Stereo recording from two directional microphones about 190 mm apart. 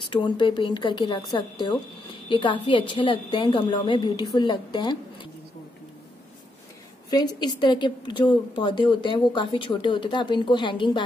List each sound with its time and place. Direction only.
0.0 s speech: 25° left (ahead or behind)
7.1 s speech: 20° left (ahead or behind)